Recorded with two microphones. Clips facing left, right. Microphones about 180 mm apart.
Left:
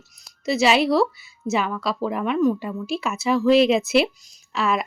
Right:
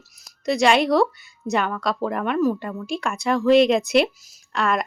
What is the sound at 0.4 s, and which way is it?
Speech, 5° left (ahead or behind).